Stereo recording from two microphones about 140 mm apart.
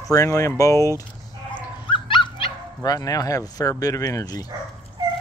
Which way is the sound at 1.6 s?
35° left (ahead or behind).